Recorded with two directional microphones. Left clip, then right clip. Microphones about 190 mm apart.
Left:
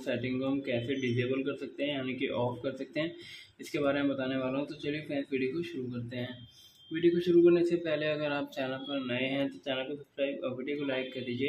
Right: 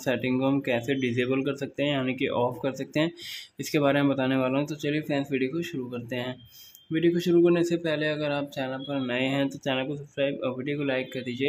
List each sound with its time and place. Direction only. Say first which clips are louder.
0.0 s a man's voice: right 7 dB; 35° right (ahead or behind)